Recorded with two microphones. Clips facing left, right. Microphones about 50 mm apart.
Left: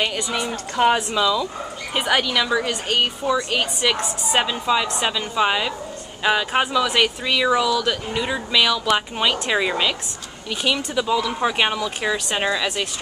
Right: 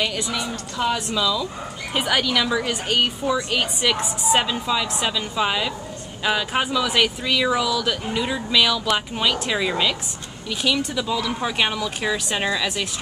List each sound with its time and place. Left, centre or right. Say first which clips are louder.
0.0 s speech: left 1 dB; centre
0.4 s a woman's voice: left 5 dB; left
0.9 s speech: left 3 dB; centre
2.0 s a woman's voice: left 1 dB; centre
3.9 s a woman's voice: right 2 dB; centre
4.4 s speech: left 7 dB; centre